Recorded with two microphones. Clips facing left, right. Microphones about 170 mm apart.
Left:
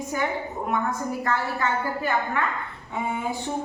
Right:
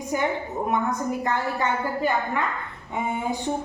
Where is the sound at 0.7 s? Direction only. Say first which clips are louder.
Right 2 dB; 20° right (ahead or behind).